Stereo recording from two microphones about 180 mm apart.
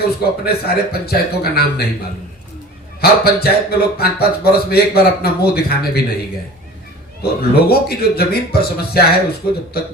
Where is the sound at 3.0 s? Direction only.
60° left (ahead or behind).